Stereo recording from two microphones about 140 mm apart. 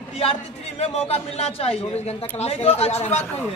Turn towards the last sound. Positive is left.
turn(degrees=50)  # may be behind; listen again after turning